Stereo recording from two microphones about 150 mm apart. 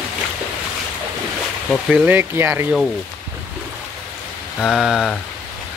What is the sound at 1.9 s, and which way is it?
Speech, 10° right (ahead or behind).